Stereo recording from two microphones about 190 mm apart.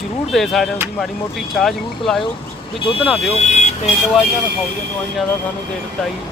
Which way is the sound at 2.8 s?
30° left (ahead or behind).